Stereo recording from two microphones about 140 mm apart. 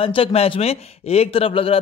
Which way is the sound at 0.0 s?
40° left (ahead or behind).